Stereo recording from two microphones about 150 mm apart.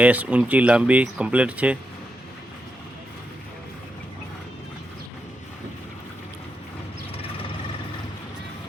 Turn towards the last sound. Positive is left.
turn(degrees=40)  # may be behind; listen again after turning